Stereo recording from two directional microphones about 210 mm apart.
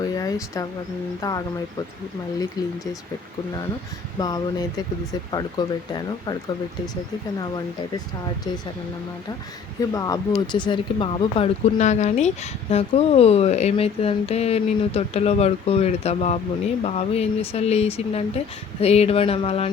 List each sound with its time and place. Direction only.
0.0 s a sound: 15° left (ahead or behind)
1.2 s speech: 15° left (ahead or behind)
2.6 s speech: 15° left (ahead or behind)
4.2 s speech: 20° left (ahead or behind)
9.9 s speech: 15° left (ahead or behind)